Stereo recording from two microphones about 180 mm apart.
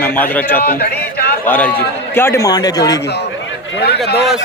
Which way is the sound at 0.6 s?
55° left (ahead or behind).